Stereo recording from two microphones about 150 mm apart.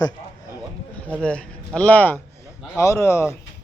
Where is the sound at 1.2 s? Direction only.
5° left (ahead or behind).